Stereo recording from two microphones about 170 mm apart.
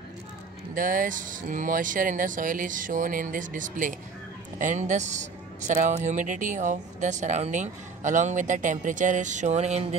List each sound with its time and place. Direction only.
0.7 s speech: 55° right (ahead or behind)